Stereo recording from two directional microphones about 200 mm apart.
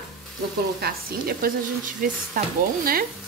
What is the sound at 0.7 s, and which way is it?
Speech, 50° right (ahead or behind).